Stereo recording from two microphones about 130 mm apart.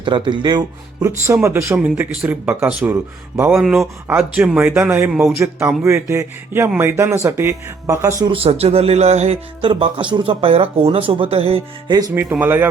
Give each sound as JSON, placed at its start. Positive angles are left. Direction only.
{"t": 0.0, "sound": "speech", "side_deg": -40}
{"t": 1.5, "sound": "speech", "side_deg": -20}
{"t": 3.5, "sound": "speech", "side_deg": -5}
{"t": 8.2, "sound": "speech", "side_deg": -45}
{"t": 11.9, "sound": "speech", "side_deg": -30}
{"t": 12.1, "sound": "speech", "side_deg": -15}